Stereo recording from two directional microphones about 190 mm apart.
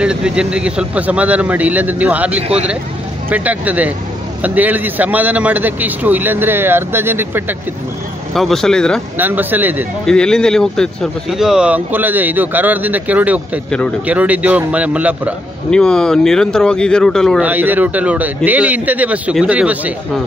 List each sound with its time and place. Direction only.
0.0 s a man's voice: 5° right (ahead or behind)
2.4 s speech: 35° right (ahead or behind)
3.3 s a man's voice: 10° right (ahead or behind)
8.4 s speech: centre (ahead or behind)
9.2 s a man's voice: 10° right (ahead or behind)
10.0 s a man's voice: 5° left (ahead or behind)
15.7 s speech: 5° left (ahead or behind)
17.5 s a man's voice: 10° right (ahead or behind)